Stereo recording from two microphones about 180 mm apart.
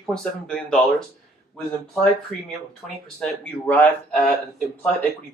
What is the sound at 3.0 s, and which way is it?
Speech, 5° left (ahead or behind).